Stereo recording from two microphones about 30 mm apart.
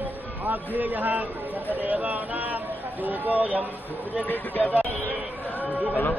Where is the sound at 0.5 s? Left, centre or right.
Right.